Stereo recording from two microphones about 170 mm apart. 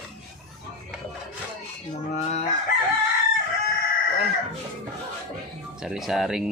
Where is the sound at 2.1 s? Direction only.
45° left (ahead or behind).